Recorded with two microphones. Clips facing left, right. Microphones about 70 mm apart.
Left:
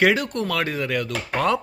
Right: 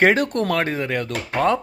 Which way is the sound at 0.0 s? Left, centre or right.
Right.